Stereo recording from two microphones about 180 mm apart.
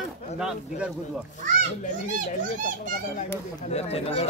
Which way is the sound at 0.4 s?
5° right (ahead or behind).